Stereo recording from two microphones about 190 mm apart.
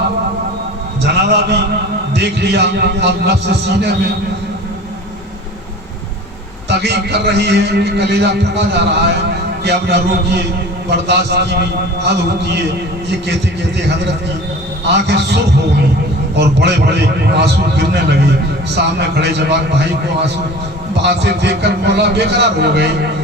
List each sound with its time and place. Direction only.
1.0 s a man's voice: 60° right (ahead or behind)
6.7 s a man's voice: 60° right (ahead or behind)
14.9 s a man's voice: 60° right (ahead or behind)
20.9 s a man's voice: 65° right (ahead or behind)